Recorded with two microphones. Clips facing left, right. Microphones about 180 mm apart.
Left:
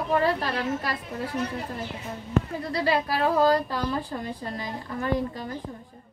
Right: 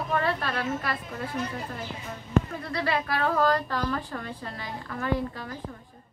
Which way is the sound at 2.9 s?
30° left (ahead or behind).